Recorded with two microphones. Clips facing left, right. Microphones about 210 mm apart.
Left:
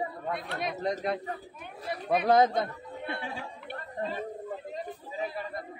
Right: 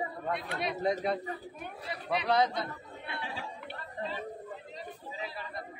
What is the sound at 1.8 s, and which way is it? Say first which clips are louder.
Speech: left 6 dB; 50° left (ahead or behind).